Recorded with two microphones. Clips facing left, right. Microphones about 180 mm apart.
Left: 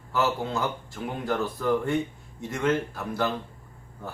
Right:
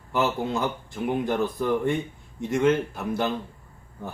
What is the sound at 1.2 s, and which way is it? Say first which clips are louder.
A man's voice: left 2 dB; 15° right (ahead or behind).